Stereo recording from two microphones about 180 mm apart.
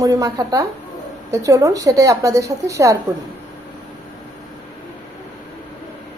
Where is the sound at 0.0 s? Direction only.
20° right (ahead or behind).